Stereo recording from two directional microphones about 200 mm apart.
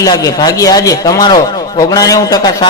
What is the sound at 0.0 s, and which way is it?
A man's voice, 20° left (ahead or behind).